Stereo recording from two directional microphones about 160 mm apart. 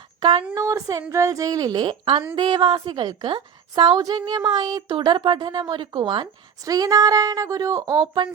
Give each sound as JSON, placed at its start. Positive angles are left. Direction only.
{"t": 0.2, "sound": "a woman's voice", "side_deg": -30}